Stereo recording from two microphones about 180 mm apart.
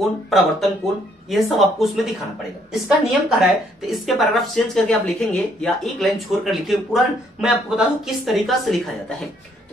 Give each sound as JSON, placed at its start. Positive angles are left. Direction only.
{"t": 0.3, "sound": "a woman's voice", "side_deg": 0}